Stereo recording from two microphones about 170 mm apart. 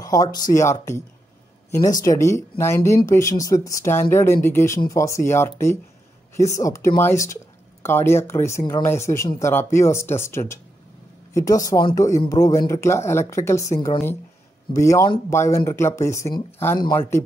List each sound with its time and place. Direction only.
0.0 s speech: 20° left (ahead or behind)